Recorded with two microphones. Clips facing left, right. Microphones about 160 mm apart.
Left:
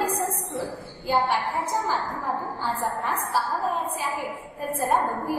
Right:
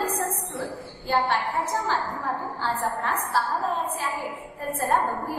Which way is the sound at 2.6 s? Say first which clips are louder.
Even; 10° left (ahead or behind).